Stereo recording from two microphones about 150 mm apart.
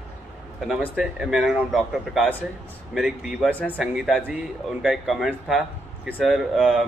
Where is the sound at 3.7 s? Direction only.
5° right (ahead or behind).